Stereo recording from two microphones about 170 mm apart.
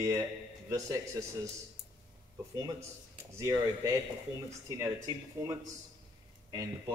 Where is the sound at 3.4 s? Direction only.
20° right (ahead or behind).